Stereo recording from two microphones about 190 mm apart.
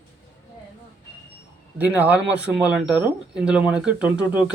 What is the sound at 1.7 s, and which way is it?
Speech, 10° right (ahead or behind).